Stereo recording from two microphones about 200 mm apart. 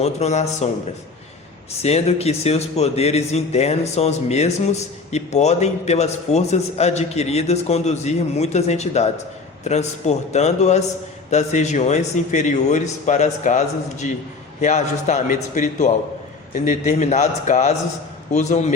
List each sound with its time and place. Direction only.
0.0 s a man's voice: 35° left (ahead or behind)
1.8 s a man's voice: 30° left (ahead or behind)